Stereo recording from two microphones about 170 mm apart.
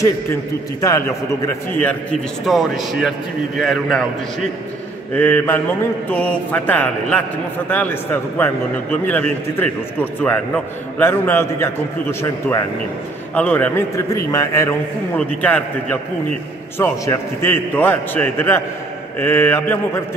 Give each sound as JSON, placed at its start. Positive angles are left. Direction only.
{"t": 0.0, "sound": "a man's voice", "side_deg": 20}
{"t": 5.1, "sound": "a man's voice", "side_deg": 10}